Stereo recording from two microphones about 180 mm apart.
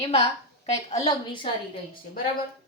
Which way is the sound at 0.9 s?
25° left (ahead or behind).